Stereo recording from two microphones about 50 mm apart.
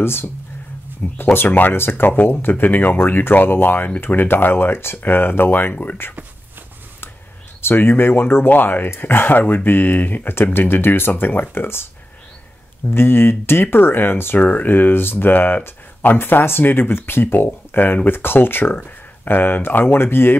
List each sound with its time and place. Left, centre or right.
0.0 s speech: left
7.6 s speech: left
8.5 s speech: left
12.9 s speech: left